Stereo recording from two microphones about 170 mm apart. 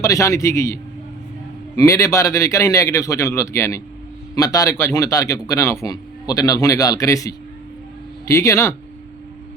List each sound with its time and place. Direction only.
0.0 s a man's voice: 20° left (ahead or behind)